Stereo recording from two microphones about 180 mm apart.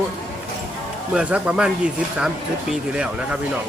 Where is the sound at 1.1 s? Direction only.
5° right (ahead or behind).